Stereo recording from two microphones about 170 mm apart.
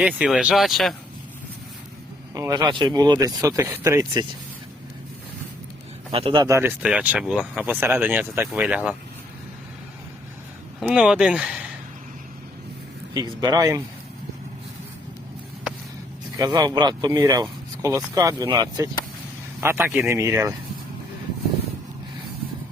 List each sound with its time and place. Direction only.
0.2 s speech: 5° right (ahead or behind)
2.3 s speech: 20° right (ahead or behind)
6.1 s speech: 30° right (ahead or behind)
6.4 s speech: 15° right (ahead or behind)
10.8 s speech: 5° right (ahead or behind)
13.4 s speech: 20° right (ahead or behind)
16.4 s speech: 20° right (ahead or behind)
19.6 s speech: 15° right (ahead or behind)